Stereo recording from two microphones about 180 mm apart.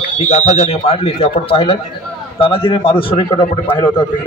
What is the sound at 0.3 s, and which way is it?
A man's voice, 40° left (ahead or behind).